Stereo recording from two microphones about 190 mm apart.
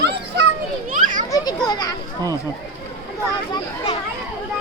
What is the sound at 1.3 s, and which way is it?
Children playing, 20° left (ahead or behind).